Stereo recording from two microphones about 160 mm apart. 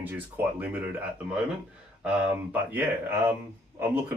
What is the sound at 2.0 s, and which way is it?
Speech, 10° right (ahead or behind).